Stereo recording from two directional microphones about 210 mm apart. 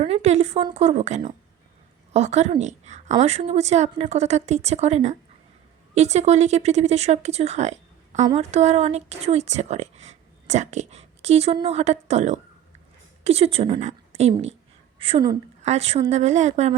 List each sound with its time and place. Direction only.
0.0 s a woman's voice: 30° right (ahead or behind)